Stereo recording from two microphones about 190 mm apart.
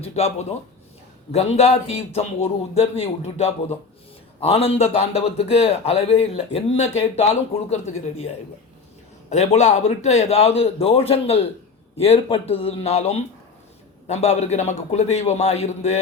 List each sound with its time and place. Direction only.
0.0 s a man's voice: 35° left (ahead or behind)
9.3 s a man's voice: 35° left (ahead or behind)